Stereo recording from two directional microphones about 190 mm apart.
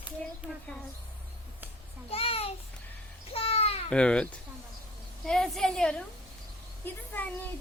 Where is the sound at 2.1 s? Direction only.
30° left (ahead or behind).